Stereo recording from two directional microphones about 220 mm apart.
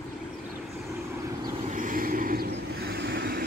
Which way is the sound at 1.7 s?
35° right (ahead or behind).